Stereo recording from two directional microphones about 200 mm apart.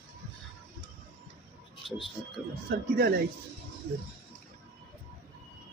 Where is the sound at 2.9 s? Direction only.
50° right (ahead or behind).